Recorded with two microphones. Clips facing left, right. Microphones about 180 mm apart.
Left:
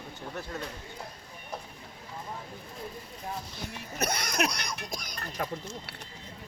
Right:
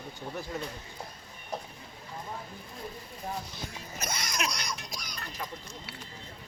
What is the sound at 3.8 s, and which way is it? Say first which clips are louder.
Speech: left 7 dB; 65° left (ahead or behind).